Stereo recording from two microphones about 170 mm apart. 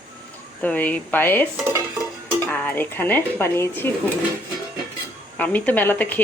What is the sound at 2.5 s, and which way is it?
Speech, 10° left (ahead or behind).